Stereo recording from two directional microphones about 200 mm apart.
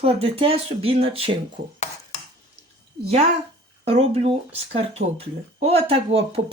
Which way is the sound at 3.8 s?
30° right (ahead or behind).